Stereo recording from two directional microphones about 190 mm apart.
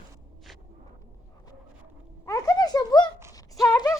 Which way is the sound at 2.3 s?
20° left (ahead or behind).